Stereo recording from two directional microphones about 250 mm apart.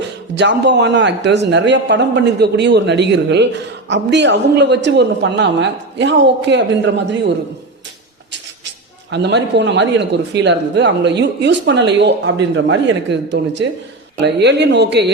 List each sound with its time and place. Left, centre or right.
0.3 s speech: right
9.0 s speech: right